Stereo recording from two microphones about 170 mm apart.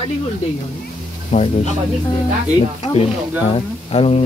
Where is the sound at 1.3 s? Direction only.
40° left (ahead or behind).